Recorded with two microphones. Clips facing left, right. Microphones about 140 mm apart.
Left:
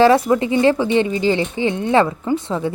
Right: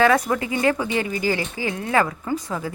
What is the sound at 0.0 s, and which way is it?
A woman's voice, 30° left (ahead or behind).